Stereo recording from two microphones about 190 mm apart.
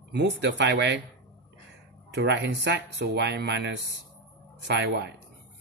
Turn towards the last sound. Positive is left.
turn(degrees=-65)  # may be behind; listen again after turning